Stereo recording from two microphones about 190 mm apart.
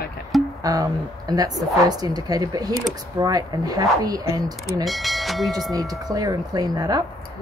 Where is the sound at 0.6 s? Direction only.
20° right (ahead or behind).